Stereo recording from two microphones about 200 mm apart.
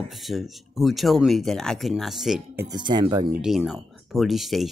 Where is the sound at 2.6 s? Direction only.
20° right (ahead or behind).